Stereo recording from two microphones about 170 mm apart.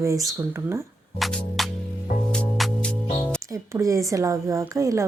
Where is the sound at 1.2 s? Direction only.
Centre (ahead or behind).